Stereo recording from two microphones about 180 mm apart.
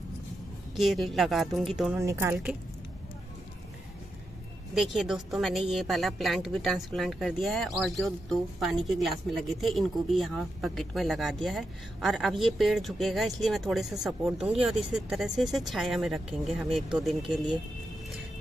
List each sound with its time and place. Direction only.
0.7 s a woman's voice: centre (ahead or behind)
2.0 s a woman's voice: 15° right (ahead or behind)
4.7 s a woman's voice: centre (ahead or behind)